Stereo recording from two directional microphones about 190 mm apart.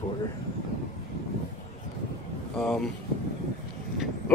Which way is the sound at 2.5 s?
5° left (ahead or behind).